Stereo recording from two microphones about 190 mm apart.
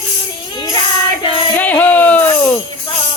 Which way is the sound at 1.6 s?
10° left (ahead or behind).